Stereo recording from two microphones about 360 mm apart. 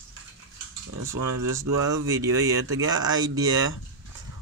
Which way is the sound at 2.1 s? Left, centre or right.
Centre.